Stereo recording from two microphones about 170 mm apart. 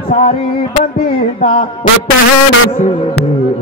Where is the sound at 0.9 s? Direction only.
35° left (ahead or behind).